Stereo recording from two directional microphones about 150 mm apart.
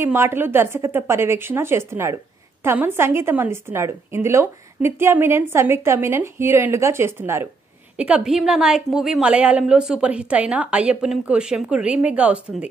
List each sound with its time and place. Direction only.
0.0 s a woman's voice: 15° right (ahead or behind)